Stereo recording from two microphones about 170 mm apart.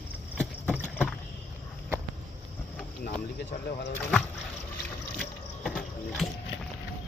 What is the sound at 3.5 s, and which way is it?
Speech, 70° left (ahead or behind).